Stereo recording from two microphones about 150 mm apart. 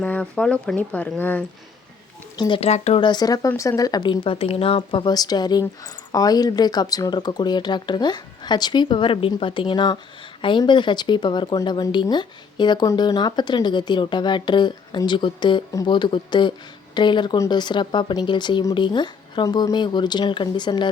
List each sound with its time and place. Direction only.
0.0 s speech: 10° left (ahead or behind)
2.3 s speech: 30° left (ahead or behind)
2.6 s speech: 45° left (ahead or behind)
3.0 s speech: 30° left (ahead or behind)